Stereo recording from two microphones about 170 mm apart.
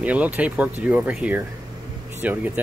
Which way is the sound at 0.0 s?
10° right (ahead or behind).